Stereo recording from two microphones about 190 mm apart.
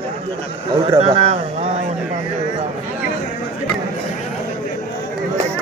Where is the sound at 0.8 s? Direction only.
30° right (ahead or behind).